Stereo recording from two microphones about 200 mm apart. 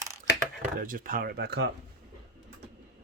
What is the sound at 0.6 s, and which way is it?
Speech, 45° right (ahead or behind).